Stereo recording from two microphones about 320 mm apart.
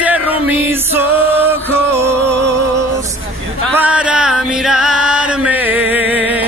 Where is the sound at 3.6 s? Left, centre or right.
Centre.